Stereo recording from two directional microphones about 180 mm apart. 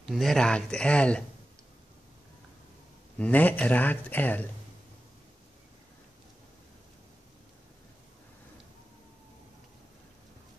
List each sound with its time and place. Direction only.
0.0 s speech: centre (ahead or behind)
3.2 s speech: 10° left (ahead or behind)